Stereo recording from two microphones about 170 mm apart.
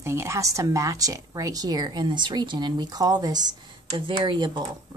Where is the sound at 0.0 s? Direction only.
15° right (ahead or behind).